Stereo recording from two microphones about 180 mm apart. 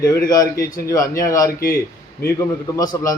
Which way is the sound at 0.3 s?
20° left (ahead or behind).